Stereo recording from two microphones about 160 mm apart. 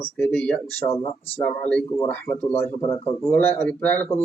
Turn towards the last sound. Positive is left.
turn(degrees=15)  # may be behind; listen again after turning